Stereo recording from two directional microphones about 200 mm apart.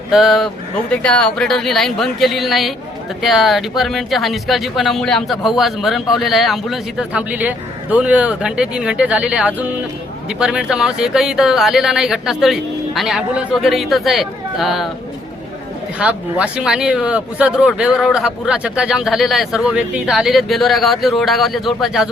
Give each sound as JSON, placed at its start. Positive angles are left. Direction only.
{"t": 0.1, "sound": "speech", "side_deg": 0}
{"t": 16.0, "sound": "speech", "side_deg": -5}